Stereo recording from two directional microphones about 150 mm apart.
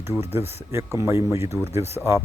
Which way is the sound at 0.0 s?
15° right (ahead or behind).